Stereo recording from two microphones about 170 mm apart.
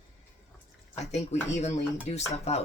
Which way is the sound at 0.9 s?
40° left (ahead or behind).